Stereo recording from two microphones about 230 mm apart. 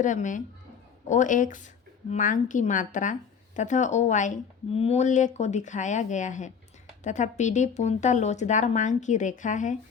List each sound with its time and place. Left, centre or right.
0.0 s speech: left